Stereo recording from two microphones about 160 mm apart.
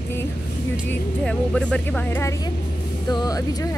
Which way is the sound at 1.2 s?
5° left (ahead or behind).